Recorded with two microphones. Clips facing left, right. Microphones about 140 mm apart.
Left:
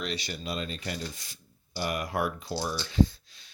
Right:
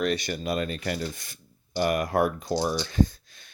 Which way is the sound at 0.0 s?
50° right (ahead or behind).